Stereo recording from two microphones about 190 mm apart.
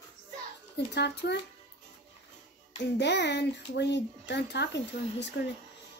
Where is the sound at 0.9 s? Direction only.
65° left (ahead or behind).